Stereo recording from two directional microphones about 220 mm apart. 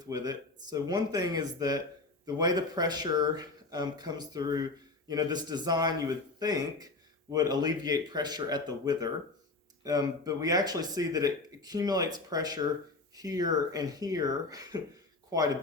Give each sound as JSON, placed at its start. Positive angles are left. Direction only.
{"t": 0.0, "sound": "speech", "side_deg": -15}